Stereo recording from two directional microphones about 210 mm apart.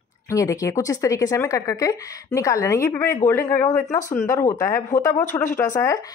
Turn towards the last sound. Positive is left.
turn(degrees=15)  # may be behind; listen again after turning